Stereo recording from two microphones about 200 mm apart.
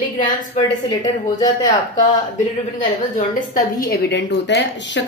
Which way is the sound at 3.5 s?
45° left (ahead or behind).